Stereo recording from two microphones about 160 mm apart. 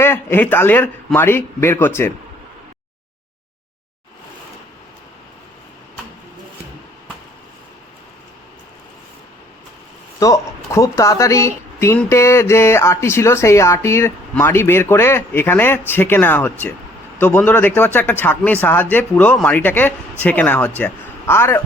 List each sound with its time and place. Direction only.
0.0 s speech: 15° left (ahead or behind)
10.2 s speech: 20° left (ahead or behind)